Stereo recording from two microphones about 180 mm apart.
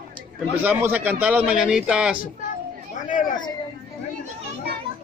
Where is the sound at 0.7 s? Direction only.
10° right (ahead or behind).